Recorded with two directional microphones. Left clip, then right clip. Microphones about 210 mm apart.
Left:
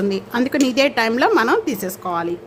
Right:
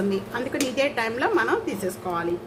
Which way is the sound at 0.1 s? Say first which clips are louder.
Left 6 dB; 45° left (ahead or behind).